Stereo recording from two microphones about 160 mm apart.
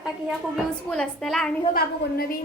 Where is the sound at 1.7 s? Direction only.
65° left (ahead or behind).